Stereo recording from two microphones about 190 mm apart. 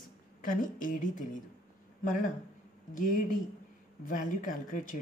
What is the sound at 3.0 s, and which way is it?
Speech, 40° left (ahead or behind).